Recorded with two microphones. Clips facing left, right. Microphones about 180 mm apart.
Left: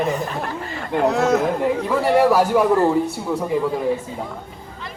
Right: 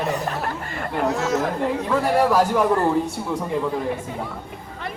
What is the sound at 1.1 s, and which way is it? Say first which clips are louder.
Chatter: left 5 dB; 60° left (ahead or behind).